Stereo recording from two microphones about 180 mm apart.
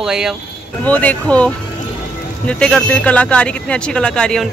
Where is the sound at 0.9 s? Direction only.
10° left (ahead or behind).